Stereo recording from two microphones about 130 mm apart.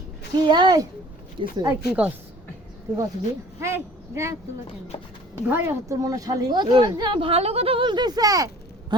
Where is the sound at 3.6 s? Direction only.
20° right (ahead or behind).